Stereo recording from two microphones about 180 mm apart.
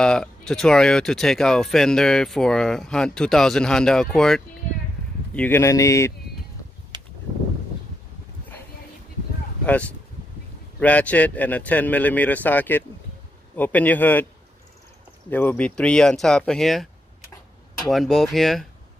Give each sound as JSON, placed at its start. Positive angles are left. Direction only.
{"t": 0.0, "sound": "a man's voice", "side_deg": 5}
{"t": 6.9, "sound": "a sound", "side_deg": -25}
{"t": 10.8, "sound": "a man's voice", "side_deg": 10}
{"t": 15.2, "sound": "speech", "side_deg": 10}